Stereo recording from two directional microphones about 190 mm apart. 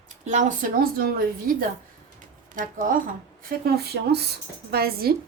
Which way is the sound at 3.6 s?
60° right (ahead or behind).